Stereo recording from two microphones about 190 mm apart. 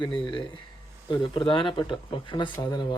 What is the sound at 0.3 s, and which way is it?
Speech, 25° left (ahead or behind).